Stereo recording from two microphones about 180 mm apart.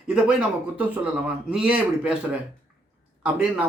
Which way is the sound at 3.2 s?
5° right (ahead or behind).